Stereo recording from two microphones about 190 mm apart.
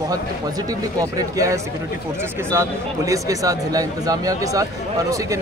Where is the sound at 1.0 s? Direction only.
20° right (ahead or behind).